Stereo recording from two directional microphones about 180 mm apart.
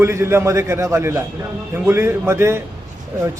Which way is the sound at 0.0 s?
15° right (ahead or behind).